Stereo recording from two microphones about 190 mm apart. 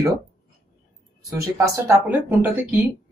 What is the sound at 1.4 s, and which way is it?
Speech, 15° right (ahead or behind).